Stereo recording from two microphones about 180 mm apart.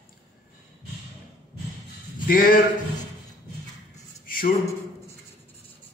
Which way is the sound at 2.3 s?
50° left (ahead or behind).